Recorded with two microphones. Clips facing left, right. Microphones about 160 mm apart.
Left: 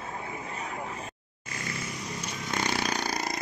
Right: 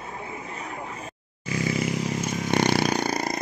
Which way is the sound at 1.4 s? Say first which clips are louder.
Right 11 dB; 85° right.